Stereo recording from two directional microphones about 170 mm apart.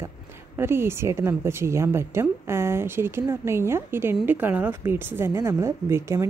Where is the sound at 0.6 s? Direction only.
15° right (ahead or behind).